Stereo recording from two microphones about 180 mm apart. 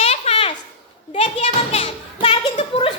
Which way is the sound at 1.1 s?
35° left (ahead or behind).